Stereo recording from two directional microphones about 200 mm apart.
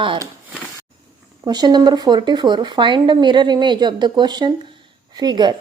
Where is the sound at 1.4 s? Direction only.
20° right (ahead or behind).